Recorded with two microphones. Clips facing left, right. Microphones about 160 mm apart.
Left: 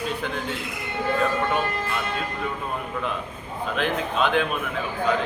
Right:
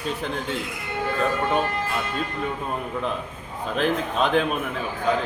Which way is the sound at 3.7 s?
40° right (ahead or behind).